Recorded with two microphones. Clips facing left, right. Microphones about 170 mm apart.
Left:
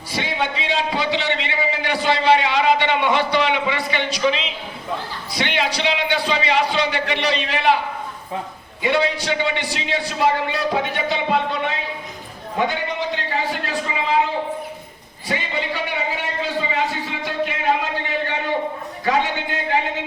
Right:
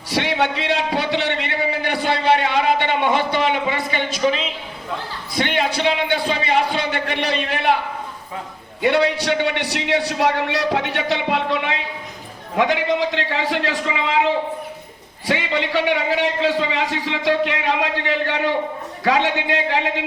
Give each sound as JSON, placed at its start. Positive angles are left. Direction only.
{"t": 0.1, "sound": "a sound", "side_deg": -70}
{"t": 8.8, "sound": "a man's voice", "side_deg": -65}
{"t": 12.5, "sound": "a man's voice", "side_deg": -90}
{"t": 15.3, "sound": "a man's voice", "side_deg": -90}